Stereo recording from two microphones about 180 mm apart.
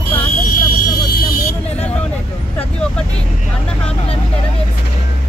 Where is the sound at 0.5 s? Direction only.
50° left (ahead or behind).